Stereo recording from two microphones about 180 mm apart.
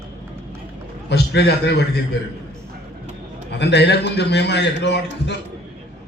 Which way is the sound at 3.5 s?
70° left (ahead or behind).